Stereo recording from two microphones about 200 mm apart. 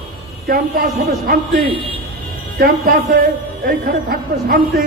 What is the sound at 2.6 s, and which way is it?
A man's voice, 45° right (ahead or behind).